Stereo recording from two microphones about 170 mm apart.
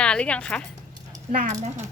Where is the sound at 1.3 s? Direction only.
50° right (ahead or behind).